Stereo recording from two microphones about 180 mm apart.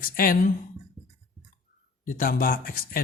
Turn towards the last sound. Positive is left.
turn(degrees=50)  # may be behind; listen again after turning